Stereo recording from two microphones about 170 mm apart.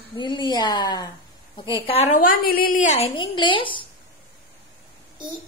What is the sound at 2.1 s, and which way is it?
A woman's voice, 55° left (ahead or behind).